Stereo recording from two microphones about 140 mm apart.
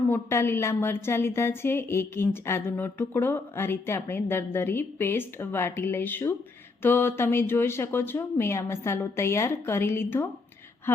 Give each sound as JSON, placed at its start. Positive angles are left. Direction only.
{"t": 0.1, "sound": "a woman's voice", "side_deg": 15}